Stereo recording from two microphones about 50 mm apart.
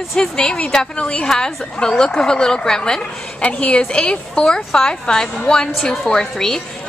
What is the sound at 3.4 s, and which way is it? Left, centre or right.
A woman's voice, left.